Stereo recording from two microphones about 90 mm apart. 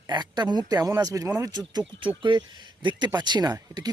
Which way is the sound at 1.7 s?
50° right (ahead or behind).